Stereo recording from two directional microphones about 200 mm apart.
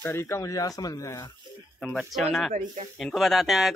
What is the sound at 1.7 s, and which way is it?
Speech, centre (ahead or behind).